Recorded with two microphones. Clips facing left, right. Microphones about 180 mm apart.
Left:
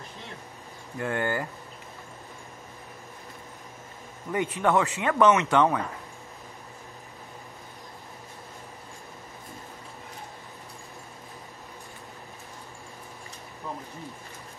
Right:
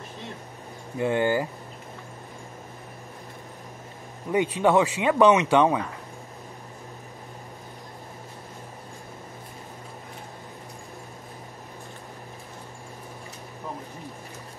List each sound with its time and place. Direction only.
0.9 s speech: 20° right (ahead or behind)
4.6 s speech: 20° right (ahead or behind)